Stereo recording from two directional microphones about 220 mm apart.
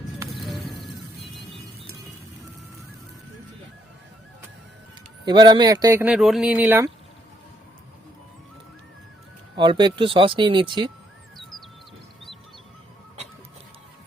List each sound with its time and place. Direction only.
0.4 s a sound: centre (ahead or behind)
5.2 s speech: 20° right (ahead or behind)
9.6 s speech: 20° right (ahead or behind)